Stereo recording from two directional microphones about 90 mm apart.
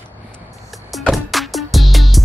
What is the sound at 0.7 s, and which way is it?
Music, centre (ahead or behind).